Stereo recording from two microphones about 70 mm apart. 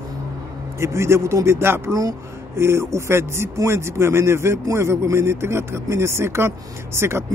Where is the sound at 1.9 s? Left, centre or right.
Right.